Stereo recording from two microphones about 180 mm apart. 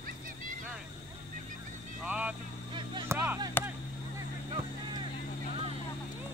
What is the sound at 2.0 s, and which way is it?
Vehicle, 5° right (ahead or behind).